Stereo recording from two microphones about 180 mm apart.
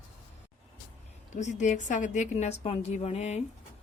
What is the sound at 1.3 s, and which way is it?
A woman's voice, 45° left (ahead or behind).